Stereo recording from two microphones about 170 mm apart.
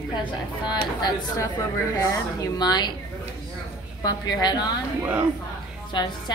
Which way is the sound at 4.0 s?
25° left (ahead or behind).